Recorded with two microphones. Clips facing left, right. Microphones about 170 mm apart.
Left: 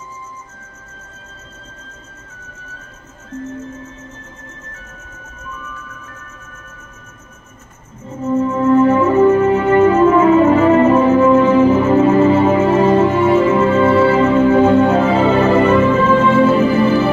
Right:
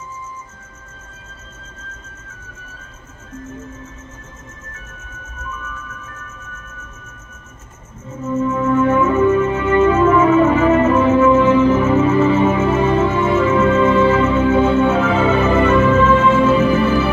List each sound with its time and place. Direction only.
8.3 s music: 30° left (ahead or behind)